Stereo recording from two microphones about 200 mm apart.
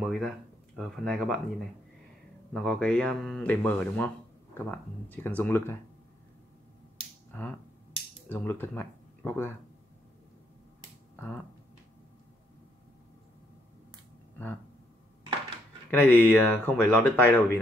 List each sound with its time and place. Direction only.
0.0 s speech: centre (ahead or behind)
7.3 s speech: 10° left (ahead or behind)
11.1 s speech: 5° left (ahead or behind)
15.9 s speech: 10° left (ahead or behind)